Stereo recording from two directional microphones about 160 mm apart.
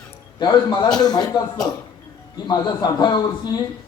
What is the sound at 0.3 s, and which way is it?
Speech, 25° left (ahead or behind).